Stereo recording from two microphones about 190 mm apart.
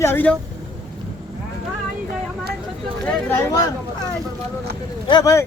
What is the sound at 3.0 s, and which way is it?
Speech, 5° left (ahead or behind).